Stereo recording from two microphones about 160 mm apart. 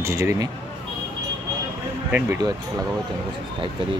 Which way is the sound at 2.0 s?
15° right (ahead or behind).